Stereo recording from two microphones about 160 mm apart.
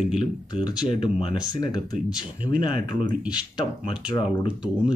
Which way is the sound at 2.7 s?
60° right (ahead or behind).